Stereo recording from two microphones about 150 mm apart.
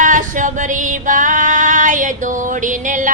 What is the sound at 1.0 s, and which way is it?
Female singing, 60° right (ahead or behind).